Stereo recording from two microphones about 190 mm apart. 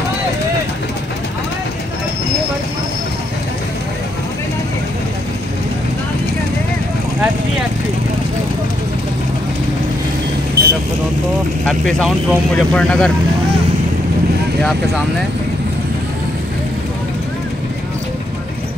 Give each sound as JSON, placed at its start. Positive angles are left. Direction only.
{"t": 10.6, "sound": "vehicle", "side_deg": -55}
{"t": 11.6, "sound": "speech", "side_deg": 0}